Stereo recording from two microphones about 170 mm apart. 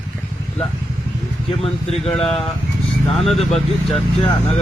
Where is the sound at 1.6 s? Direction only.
35° left (ahead or behind).